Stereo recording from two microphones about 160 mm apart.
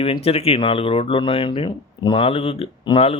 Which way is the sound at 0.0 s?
35° left (ahead or behind).